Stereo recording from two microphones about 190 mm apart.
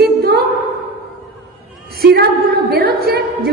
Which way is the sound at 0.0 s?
55° right (ahead or behind).